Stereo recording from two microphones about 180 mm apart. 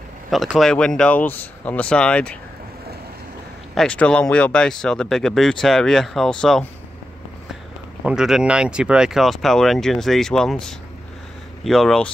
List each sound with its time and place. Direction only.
0.3 s speech: centre (ahead or behind)
3.7 s speech: 5° left (ahead or behind)
8.0 s speech: 5° right (ahead or behind)